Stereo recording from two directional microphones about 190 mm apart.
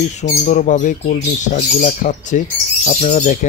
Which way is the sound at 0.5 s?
40° left (ahead or behind).